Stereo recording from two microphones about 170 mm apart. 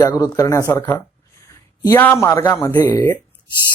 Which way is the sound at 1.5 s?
15° left (ahead or behind).